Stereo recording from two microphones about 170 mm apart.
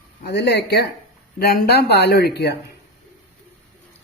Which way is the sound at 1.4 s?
65° left (ahead or behind).